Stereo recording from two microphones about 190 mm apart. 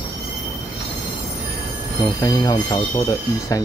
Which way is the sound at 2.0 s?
20° left (ahead or behind).